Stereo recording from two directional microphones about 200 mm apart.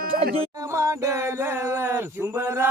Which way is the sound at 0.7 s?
15° right (ahead or behind).